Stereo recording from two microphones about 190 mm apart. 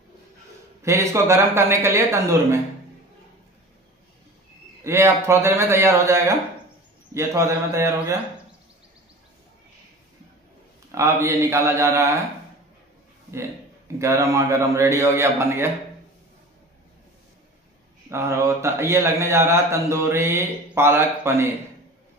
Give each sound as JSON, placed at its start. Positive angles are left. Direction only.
{"t": 0.8, "sound": "a man's voice", "side_deg": -15}
{"t": 4.8, "sound": "a man's voice", "side_deg": -15}
{"t": 11.0, "sound": "a man's voice", "side_deg": -15}
{"t": 13.9, "sound": "a man's voice", "side_deg": -15}
{"t": 18.1, "sound": "a man's voice", "side_deg": -15}